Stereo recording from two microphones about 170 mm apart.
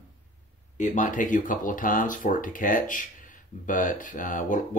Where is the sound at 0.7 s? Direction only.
45° left (ahead or behind).